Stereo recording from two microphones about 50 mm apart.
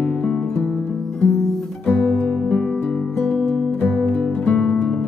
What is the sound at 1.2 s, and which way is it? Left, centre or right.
Music, centre.